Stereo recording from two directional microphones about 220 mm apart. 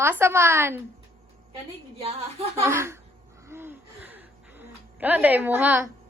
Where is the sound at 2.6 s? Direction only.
10° right (ahead or behind).